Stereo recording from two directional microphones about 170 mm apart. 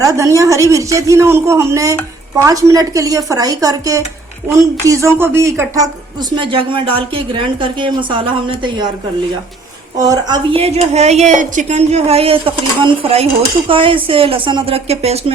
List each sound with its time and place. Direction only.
0.0 s a man's voice: 20° right (ahead or behind)
6.3 s a man's voice: 30° right (ahead or behind)
10.0 s a woman's voice: 20° right (ahead or behind)